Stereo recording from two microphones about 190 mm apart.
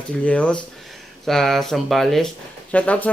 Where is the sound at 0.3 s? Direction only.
5° left (ahead or behind).